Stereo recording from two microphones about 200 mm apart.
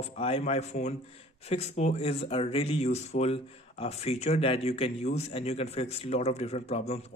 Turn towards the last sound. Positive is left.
turn(degrees=30)  # may be behind; listen again after turning